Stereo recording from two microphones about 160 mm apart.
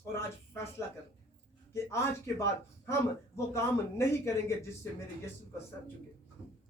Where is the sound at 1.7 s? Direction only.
15° left (ahead or behind).